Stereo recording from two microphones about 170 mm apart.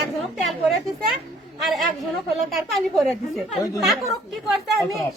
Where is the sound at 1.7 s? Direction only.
Centre (ahead or behind).